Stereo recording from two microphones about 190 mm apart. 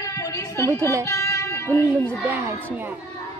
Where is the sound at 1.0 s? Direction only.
15° left (ahead or behind).